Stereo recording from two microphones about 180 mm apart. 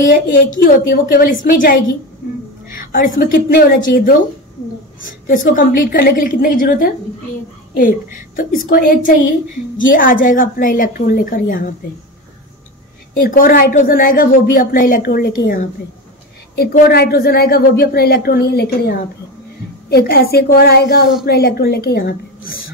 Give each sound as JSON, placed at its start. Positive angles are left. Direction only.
{"t": 0.0, "sound": "speech", "side_deg": 50}
{"t": 2.8, "sound": "a sound", "side_deg": 50}
{"t": 3.2, "sound": "speech", "side_deg": 50}
{"t": 5.5, "sound": "speech", "side_deg": 50}
{"t": 8.4, "sound": "speech", "side_deg": 50}
{"t": 13.3, "sound": "a woman's voice", "side_deg": 50}